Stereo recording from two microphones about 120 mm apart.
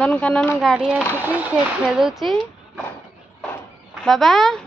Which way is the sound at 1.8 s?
5° right (ahead or behind).